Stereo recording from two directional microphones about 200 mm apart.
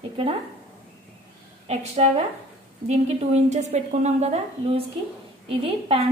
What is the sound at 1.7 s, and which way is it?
Speech, 30° right (ahead or behind).